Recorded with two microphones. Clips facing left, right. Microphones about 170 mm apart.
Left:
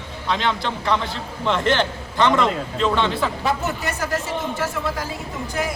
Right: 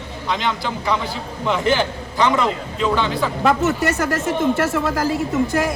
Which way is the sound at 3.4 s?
70° right (ahead or behind).